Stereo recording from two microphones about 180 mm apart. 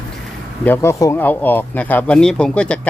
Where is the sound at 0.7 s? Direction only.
15° left (ahead or behind).